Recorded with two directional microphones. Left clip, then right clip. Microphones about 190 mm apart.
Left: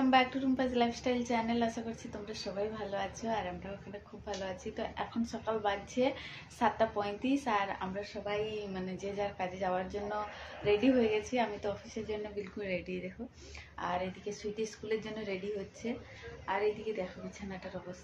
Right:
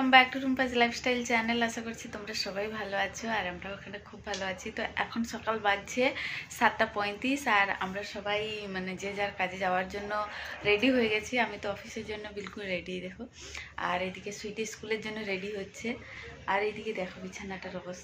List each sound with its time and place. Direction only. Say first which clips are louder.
0.1 s a woman's voice: right 9 dB; 5° right (ahead or behind)
13.7 s a woman's voice: right 4 dB; 10° right (ahead or behind)
16.5 s a woman's voice: right 5 dB; 30° right (ahead or behind)